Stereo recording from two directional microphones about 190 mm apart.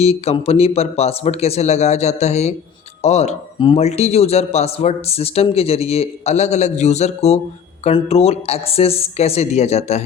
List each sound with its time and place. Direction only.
0.0 s a man's voice: 35° left (ahead or behind)